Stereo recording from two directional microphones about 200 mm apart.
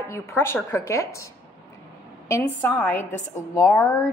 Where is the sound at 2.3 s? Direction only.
10° left (ahead or behind).